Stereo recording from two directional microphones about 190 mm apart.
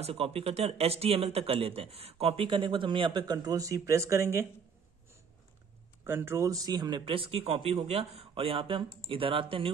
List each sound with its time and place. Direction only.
0.0 s speech: 30° right (ahead or behind); by 4.5 s 15° right (ahead or behind)
6.0 s speech: 10° right (ahead or behind); by 9.7 s 30° right (ahead or behind)